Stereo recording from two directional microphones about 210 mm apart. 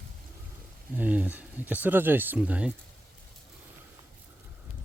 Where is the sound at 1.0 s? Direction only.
5° right (ahead or behind).